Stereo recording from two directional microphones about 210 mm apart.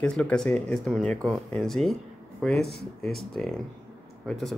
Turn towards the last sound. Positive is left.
turn(degrees=0)  # may be behind; listen again after turning